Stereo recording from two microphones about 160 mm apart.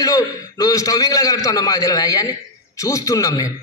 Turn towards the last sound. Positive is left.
turn(degrees=20)  # may be behind; listen again after turning